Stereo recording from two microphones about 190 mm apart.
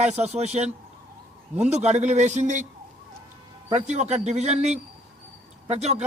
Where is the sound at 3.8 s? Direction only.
40° right (ahead or behind).